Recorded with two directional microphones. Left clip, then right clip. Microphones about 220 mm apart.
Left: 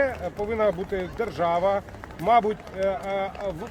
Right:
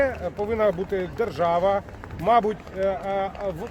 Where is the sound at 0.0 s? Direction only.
15° right (ahead or behind).